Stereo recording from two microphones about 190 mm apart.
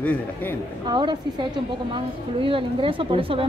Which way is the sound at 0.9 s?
25° right (ahead or behind).